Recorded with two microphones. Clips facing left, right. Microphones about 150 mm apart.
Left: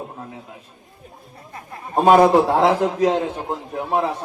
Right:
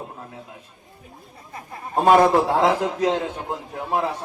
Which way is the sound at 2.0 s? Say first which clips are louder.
Left 3 dB; 15° left (ahead or behind).